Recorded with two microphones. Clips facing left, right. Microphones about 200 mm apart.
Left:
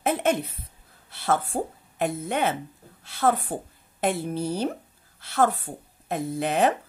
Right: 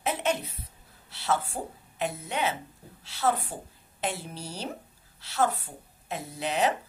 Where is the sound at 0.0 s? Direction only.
50° left (ahead or behind).